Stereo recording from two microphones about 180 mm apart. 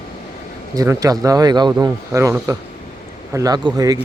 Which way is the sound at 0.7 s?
20° right (ahead or behind).